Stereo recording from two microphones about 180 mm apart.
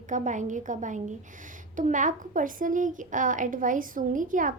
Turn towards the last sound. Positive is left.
turn(degrees=-45)  # may be behind; listen again after turning